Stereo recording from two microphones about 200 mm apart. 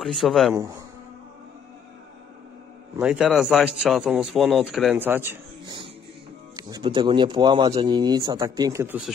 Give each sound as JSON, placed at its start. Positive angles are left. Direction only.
{"t": 0.0, "sound": "a man's voice", "side_deg": 0}
{"t": 0.6, "sound": "speech", "side_deg": -15}
{"t": 3.0, "sound": "a man's voice", "side_deg": -5}
{"t": 6.5, "sound": "speech", "side_deg": -20}